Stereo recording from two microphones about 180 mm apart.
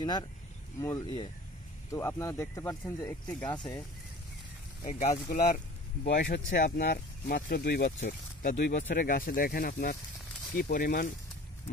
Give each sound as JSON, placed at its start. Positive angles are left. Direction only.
{"t": 0.7, "sound": "speech", "side_deg": 20}
{"t": 1.9, "sound": "speech", "side_deg": 15}
{"t": 3.5, "sound": "speech", "side_deg": 25}
{"t": 4.9, "sound": "speech", "side_deg": 50}
{"t": 6.0, "sound": "speech", "side_deg": 75}
{"t": 6.5, "sound": "speech", "side_deg": 45}
{"t": 8.1, "sound": "a sound", "side_deg": 50}
{"t": 8.7, "sound": "speech", "side_deg": 50}